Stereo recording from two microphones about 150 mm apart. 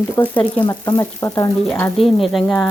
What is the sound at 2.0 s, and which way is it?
Speech, centre (ahead or behind).